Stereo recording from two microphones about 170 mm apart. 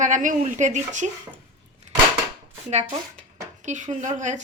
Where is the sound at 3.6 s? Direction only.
45° right (ahead or behind).